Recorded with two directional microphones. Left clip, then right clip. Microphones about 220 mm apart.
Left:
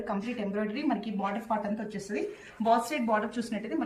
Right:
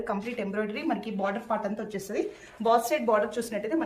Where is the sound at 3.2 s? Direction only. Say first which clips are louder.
Right 5 dB; 50° right (ahead or behind).